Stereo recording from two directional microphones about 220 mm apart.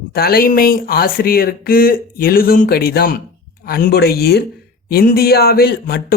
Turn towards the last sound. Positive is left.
turn(degrees=45)  # may be behind; listen again after turning